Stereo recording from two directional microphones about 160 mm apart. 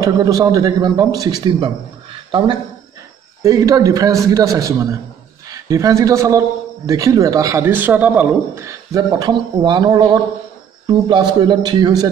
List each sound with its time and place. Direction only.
0.0 s speech: 20° right (ahead or behind)
3.4 s speech: 20° right (ahead or behind)